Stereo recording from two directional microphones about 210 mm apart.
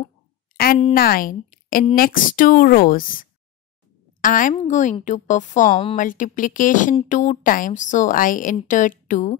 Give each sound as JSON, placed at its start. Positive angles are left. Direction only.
{"t": 0.9, "sound": "speech", "side_deg": 45}